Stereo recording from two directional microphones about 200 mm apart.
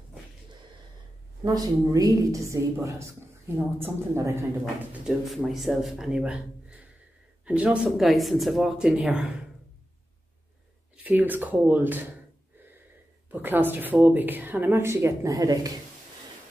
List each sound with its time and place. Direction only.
1.4 s a woman's voice: 20° right (ahead or behind)
5.0 s a man's voice: centre (ahead or behind)
11.1 s a woman's voice: 10° right (ahead or behind)
13.3 s a woman's voice: 10° right (ahead or behind)